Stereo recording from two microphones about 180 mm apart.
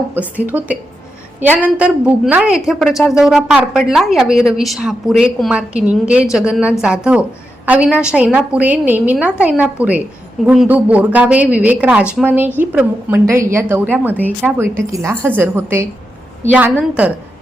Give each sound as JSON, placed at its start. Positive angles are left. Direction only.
{"t": 0.1, "sound": "a woman's voice", "side_deg": -10}